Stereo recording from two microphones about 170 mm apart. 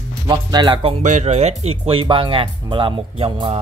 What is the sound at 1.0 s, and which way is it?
Speech, 45° right (ahead or behind).